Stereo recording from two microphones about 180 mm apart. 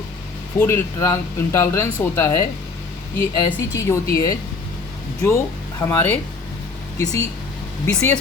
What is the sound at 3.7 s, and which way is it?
Speech, 15° left (ahead or behind).